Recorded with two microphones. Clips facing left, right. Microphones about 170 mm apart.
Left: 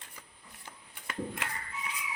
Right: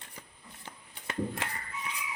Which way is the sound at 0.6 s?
30° right (ahead or behind).